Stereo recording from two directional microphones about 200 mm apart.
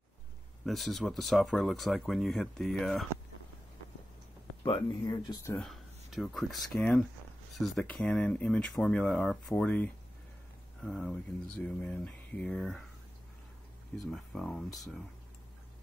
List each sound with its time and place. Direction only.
0.7 s speech: centre (ahead or behind)
4.6 s speech: 20° left (ahead or behind)
5.6 s speech: centre (ahead or behind)
13.9 s speech: centre (ahead or behind)